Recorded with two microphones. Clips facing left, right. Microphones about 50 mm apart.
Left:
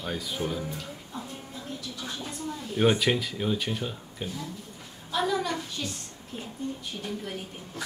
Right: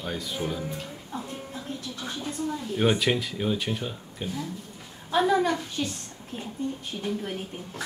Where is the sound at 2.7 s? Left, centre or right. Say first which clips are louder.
Left 1 dB; centre.